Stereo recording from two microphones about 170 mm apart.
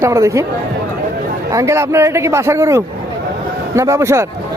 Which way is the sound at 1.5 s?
20° right (ahead or behind).